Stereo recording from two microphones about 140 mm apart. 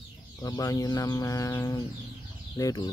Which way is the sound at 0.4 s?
25° left (ahead or behind).